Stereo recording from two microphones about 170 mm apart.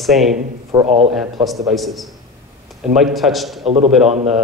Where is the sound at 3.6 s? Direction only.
40° right (ahead or behind).